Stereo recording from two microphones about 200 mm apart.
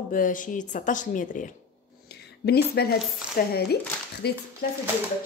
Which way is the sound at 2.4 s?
55° left (ahead or behind).